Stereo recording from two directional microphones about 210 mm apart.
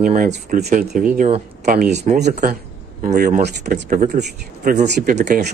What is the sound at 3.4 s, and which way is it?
Speech, 50° right (ahead or behind).